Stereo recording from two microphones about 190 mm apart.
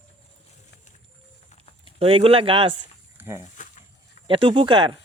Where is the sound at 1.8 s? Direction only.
30° right (ahead or behind).